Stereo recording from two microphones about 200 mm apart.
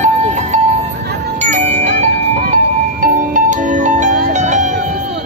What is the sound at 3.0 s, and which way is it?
Music, 40° right (ahead or behind).